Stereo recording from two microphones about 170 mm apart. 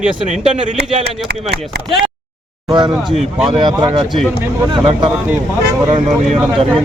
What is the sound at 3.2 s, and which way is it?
Speech, centre (ahead or behind).